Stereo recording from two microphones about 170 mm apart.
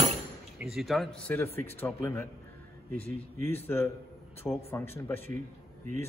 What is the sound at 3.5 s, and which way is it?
Speech, 10° left (ahead or behind).